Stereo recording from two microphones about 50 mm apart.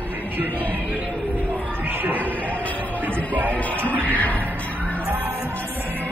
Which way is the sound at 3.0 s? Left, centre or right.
Right.